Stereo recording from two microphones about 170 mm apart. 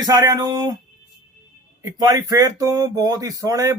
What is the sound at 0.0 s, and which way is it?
Speech, 20° right (ahead or behind).